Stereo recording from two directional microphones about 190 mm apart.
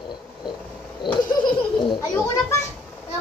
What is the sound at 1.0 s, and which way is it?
Laughter, 25° left (ahead or behind).